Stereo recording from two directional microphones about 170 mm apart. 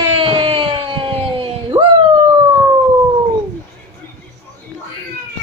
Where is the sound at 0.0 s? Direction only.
30° right (ahead or behind).